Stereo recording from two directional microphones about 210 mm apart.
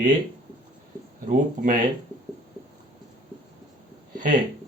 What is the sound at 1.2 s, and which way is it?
Speech, 40° right (ahead or behind).